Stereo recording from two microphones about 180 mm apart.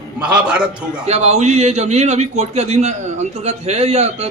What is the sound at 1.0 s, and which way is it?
A man's voice, 35° right (ahead or behind).